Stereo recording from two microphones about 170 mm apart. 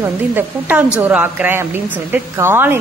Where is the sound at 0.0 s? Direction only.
10° right (ahead or behind).